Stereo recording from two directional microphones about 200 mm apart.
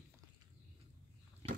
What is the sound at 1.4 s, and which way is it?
Biting, 25° right (ahead or behind).